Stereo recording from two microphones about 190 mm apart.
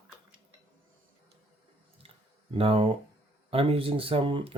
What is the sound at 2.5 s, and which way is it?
Speech, 30° right (ahead or behind).